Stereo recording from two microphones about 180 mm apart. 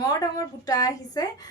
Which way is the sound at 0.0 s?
20° left (ahead or behind).